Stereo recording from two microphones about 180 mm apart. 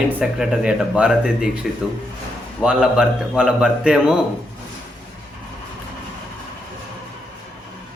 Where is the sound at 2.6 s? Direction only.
5° right (ahead or behind).